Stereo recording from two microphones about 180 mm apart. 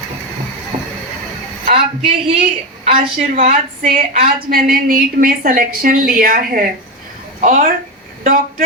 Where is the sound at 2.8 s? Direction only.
35° right (ahead or behind).